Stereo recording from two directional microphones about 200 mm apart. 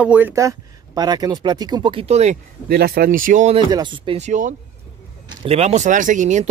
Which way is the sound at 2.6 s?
50° right (ahead or behind).